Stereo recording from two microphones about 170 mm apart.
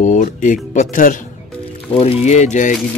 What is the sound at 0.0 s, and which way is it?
Speech, 50° left (ahead or behind).